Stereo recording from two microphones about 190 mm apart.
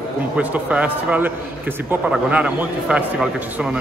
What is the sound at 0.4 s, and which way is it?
A man's voice, 5° right (ahead or behind).